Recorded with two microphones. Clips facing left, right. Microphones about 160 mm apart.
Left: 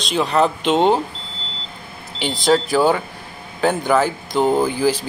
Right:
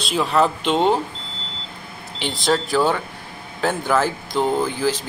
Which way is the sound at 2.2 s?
Centre (ahead or behind).